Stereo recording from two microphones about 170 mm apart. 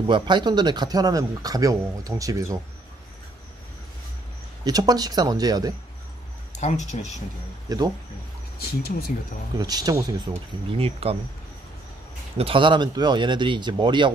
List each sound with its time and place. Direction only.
0.0 s speech: 25° right (ahead or behind)
4.6 s speech: 20° right (ahead or behind)
6.5 s speech: 40° left (ahead or behind)
8.5 s speech: 65° left (ahead or behind)
9.6 s speech: 20° right (ahead or behind)
10.7 s speech: 35° right (ahead or behind)
12.4 s speech: 30° right (ahead or behind)